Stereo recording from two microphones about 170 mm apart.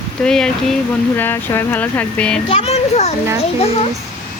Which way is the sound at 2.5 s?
40° left (ahead or behind).